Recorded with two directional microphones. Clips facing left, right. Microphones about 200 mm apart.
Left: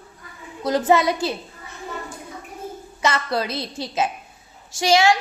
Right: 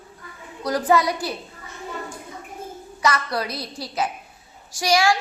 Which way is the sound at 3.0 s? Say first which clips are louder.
Left 1 dB; 25° left (ahead or behind).